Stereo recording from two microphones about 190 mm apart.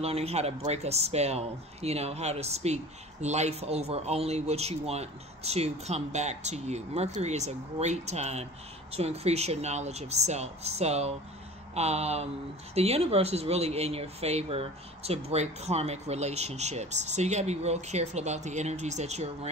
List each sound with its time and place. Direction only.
0.0 s speech: 30° right (ahead or behind)